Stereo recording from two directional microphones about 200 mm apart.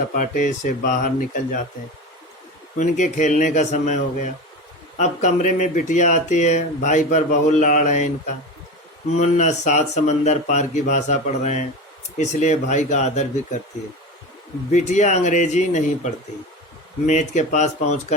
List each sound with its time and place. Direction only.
0.1 s speech: 45° left (ahead or behind)
2.7 s speech: 40° left (ahead or behind)
9.1 s speech: 35° left (ahead or behind)
14.7 s speech: 35° left (ahead or behind)